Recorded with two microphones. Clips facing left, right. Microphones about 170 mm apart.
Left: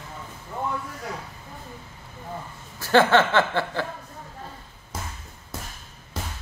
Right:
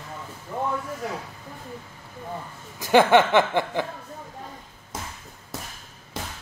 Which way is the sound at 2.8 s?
15° right (ahead or behind).